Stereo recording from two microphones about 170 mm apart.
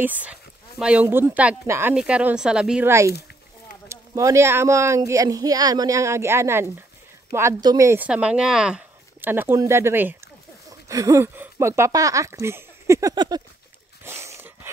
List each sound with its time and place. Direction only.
0.0 s speech: 10° right (ahead or behind)
3.9 s speech: 20° right (ahead or behind)
14.0 s dog: 15° right (ahead or behind)